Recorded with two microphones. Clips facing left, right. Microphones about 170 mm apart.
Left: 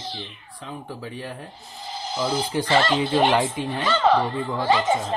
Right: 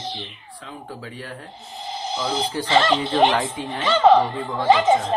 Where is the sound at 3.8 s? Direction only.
20° right (ahead or behind).